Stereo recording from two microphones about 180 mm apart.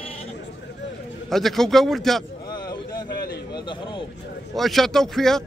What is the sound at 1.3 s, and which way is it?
Speech, centre (ahead or behind).